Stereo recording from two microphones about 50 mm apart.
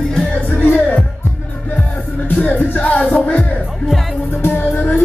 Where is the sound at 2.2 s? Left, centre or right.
Left.